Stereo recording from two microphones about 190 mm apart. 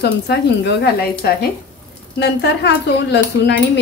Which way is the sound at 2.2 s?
65° left (ahead or behind).